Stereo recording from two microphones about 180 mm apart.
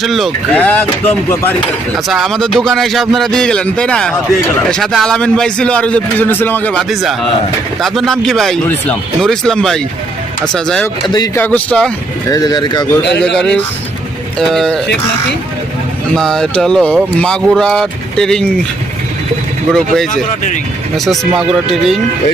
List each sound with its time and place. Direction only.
0.0 s speech: centre (ahead or behind)
2.0 s a man's voice: centre (ahead or behind)
12.3 s speech: 20° left (ahead or behind)
13.1 s a man's voice: 70° left (ahead or behind)
13.3 s a man's voice: 5° left (ahead or behind)
16.1 s a man's voice: 5° left (ahead or behind)
19.7 s a man's voice: centre (ahead or behind)